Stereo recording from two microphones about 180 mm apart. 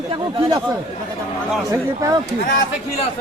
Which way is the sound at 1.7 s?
20° right (ahead or behind).